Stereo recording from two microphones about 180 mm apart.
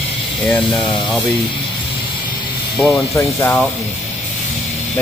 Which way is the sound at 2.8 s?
15° left (ahead or behind).